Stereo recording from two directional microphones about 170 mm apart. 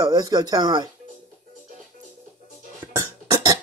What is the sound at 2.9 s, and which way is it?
Beatboxing, 20° right (ahead or behind).